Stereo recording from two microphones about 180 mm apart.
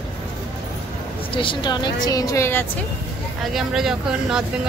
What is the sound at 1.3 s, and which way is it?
A woman's voice, 30° left (ahead or behind).